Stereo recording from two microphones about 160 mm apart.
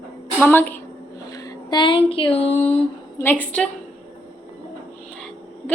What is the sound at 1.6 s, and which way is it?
Speech, 30° left (ahead or behind).